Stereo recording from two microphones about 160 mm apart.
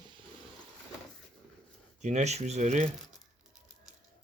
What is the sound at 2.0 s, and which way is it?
Speech, 45° right (ahead or behind).